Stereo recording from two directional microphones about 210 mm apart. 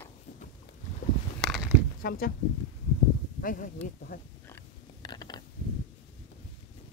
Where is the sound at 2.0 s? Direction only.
45° left (ahead or behind).